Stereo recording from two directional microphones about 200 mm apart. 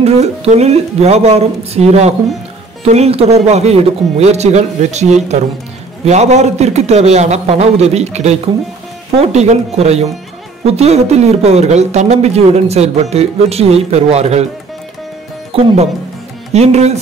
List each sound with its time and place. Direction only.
0.0 s speech: 35° right (ahead or behind)
15.5 s speech: 30° right (ahead or behind)